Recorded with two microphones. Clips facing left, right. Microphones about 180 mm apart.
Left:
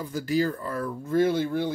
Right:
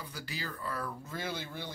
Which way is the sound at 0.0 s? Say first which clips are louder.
Left 17 dB; 45° left (ahead or behind).